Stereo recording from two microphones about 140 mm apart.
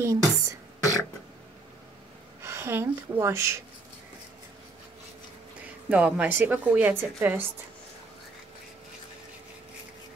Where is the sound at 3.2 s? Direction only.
20° right (ahead or behind).